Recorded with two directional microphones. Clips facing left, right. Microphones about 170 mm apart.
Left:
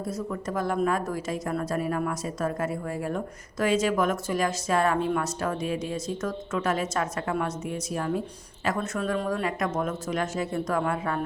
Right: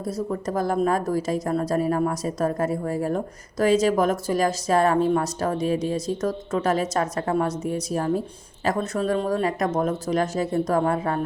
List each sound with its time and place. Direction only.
0.0 s a woman's voice: 35° right (ahead or behind)